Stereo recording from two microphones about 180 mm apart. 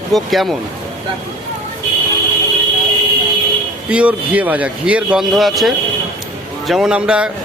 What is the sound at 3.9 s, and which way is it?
Speech, 5° right (ahead or behind).